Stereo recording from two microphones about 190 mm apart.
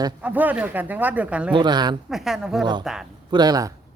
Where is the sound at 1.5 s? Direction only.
20° right (ahead or behind).